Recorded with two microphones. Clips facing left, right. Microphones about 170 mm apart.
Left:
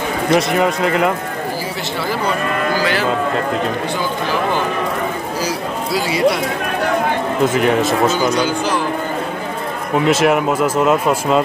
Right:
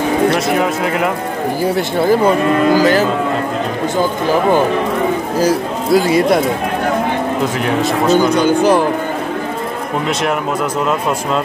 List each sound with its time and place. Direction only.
0.3 s speech: centre (ahead or behind)
1.6 s speech: 50° right (ahead or behind)
4.3 s speech: 50° right (ahead or behind)
7.4 s speech: centre (ahead or behind)
8.2 s speech: 55° right (ahead or behind)
10.0 s speech: 5° left (ahead or behind)